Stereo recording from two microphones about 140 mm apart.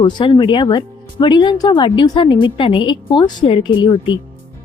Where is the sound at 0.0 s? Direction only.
35° left (ahead or behind).